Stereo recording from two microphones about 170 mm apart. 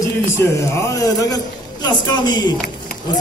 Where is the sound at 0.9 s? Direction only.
20° left (ahead or behind).